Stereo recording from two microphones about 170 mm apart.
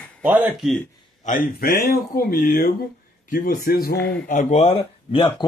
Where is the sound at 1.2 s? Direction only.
50° left (ahead or behind).